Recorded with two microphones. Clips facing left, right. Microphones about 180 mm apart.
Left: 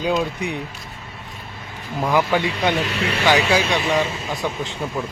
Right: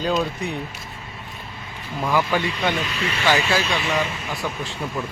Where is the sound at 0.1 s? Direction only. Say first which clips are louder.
Left 2 dB; 10° left (ahead or behind).